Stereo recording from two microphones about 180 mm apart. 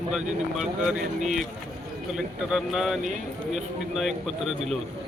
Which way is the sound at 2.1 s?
5° right (ahead or behind).